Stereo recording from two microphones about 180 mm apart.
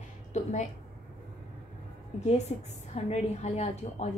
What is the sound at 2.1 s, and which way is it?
A woman's voice, 40° left (ahead or behind).